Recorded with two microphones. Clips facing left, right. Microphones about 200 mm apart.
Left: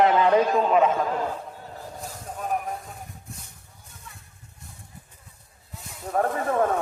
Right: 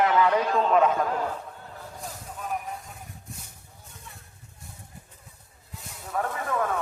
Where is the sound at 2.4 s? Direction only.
45° left (ahead or behind).